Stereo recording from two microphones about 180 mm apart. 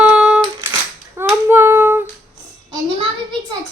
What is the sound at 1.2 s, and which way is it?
Clapping, 15° right (ahead or behind).